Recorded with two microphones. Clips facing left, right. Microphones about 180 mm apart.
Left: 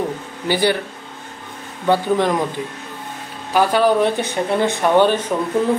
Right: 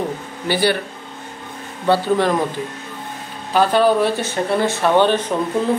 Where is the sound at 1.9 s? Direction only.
15° left (ahead or behind).